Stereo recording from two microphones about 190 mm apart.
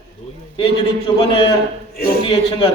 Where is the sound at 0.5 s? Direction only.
25° left (ahead or behind).